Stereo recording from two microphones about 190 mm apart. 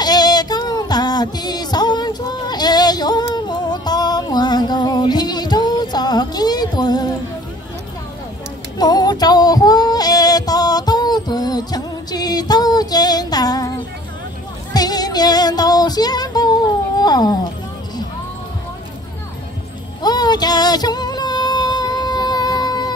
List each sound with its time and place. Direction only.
0.0 s female singing: 20° left (ahead or behind)
8.7 s music: 20° left (ahead or behind)
14.7 s female singing: 20° left (ahead or behind)
17.0 s dog: 20° left (ahead or behind)
20.0 s child singing: 20° left (ahead or behind)